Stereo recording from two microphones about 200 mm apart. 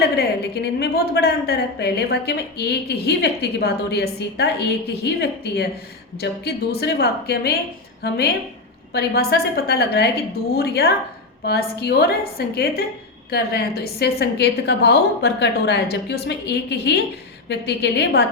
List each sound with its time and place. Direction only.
0.0 s a woman's voice: 55° left (ahead or behind)